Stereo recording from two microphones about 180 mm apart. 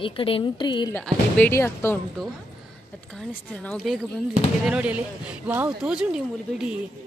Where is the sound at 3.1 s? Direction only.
5° left (ahead or behind).